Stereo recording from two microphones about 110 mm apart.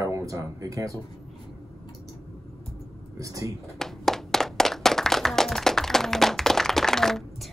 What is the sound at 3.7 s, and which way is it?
Music, 5° left (ahead or behind).